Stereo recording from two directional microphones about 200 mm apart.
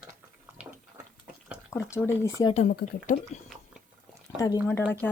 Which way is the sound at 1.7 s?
15° left (ahead or behind).